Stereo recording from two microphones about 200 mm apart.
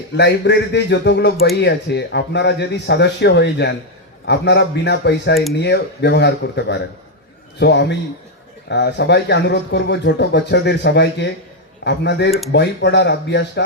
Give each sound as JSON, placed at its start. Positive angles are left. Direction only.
{"t": 0.2, "sound": "speech", "side_deg": 60}